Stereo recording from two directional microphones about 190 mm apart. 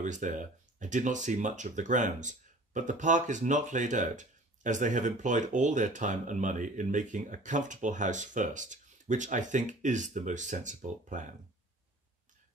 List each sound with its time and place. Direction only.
0.0 s speech: 40° right (ahead or behind)